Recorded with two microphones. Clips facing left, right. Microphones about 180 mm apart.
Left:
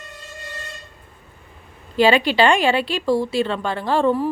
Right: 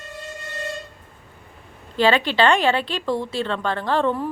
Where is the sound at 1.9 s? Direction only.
10° left (ahead or behind).